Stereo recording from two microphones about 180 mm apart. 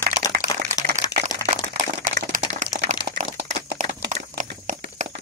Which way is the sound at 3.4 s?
75° right (ahead or behind).